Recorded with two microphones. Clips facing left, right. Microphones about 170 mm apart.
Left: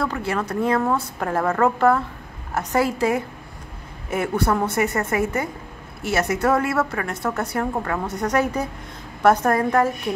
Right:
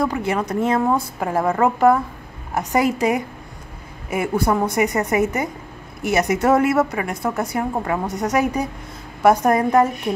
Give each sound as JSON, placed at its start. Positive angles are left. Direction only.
{"t": 0.0, "sound": "a woman's voice", "side_deg": -15}